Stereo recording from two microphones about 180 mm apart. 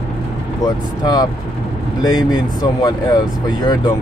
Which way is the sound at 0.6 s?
20° left (ahead or behind).